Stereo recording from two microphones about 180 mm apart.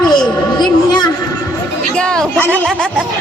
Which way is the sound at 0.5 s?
25° left (ahead or behind).